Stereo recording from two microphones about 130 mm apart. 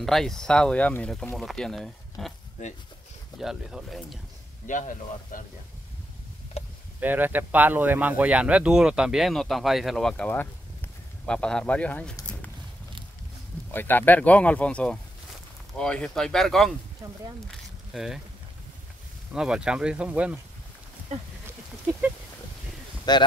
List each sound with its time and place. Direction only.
0.0 s speech: 5° left (ahead or behind)
3.3 s speech: 5° right (ahead or behind)
4.6 s speech: 80° left
7.0 s speech: 15° right (ahead or behind); by 12.1 s 10° left (ahead or behind)
13.7 s speech: 15° left (ahead or behind)
17.5 s a sound: centre (ahead or behind)
19.3 s speech: 5° right (ahead or behind)
23.1 s speech: 30° left (ahead or behind)